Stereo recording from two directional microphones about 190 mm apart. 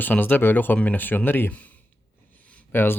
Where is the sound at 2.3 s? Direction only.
5° left (ahead or behind).